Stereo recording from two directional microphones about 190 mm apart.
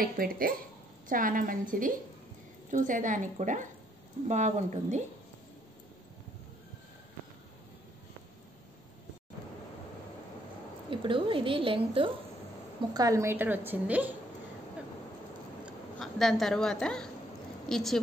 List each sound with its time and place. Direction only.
0.0 s a woman's voice: 50° right (ahead or behind)
10.9 s a woman's voice: 25° right (ahead or behind); by 14.1 s 10° right (ahead or behind)
15.6 s a woman's voice: centre (ahead or behind)